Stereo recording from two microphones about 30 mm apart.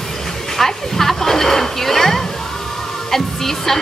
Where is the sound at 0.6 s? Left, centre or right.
Centre.